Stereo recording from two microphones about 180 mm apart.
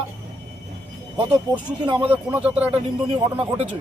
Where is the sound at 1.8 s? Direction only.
25° right (ahead or behind).